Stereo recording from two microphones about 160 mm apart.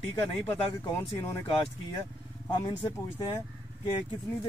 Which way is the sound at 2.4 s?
25° left (ahead or behind).